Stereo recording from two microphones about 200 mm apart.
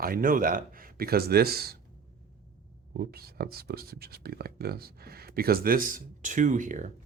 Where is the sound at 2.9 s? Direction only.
50° right (ahead or behind).